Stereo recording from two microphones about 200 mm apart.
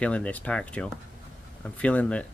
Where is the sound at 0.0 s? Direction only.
5° left (ahead or behind).